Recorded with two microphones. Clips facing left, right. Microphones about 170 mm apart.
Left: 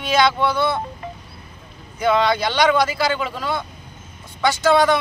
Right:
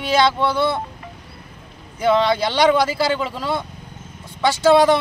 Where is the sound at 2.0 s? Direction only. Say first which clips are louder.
Right 1 dB; 30° right (ahead or behind).